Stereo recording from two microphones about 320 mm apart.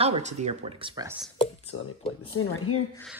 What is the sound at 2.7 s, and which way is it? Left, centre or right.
Speech, left.